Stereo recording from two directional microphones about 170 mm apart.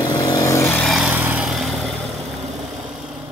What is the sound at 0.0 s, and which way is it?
Vehicle, 25° left (ahead or behind).